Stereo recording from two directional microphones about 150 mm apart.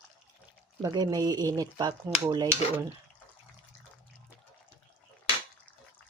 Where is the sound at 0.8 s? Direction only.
25° right (ahead or behind).